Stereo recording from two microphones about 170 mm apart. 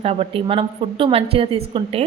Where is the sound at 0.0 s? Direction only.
35° right (ahead or behind).